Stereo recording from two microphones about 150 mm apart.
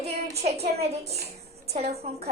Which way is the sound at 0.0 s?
45° right (ahead or behind).